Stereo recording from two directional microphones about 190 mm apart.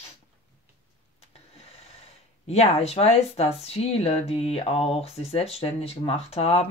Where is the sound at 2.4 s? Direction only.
35° left (ahead or behind).